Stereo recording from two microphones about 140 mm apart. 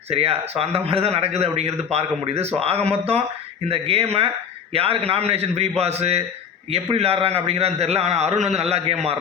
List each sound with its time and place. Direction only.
0.1 s a man's voice: 45° right (ahead or behind)